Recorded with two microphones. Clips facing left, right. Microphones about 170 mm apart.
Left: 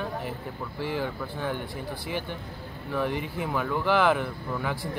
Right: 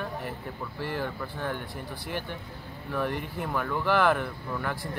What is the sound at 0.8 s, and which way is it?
Speech, 5° left (ahead or behind).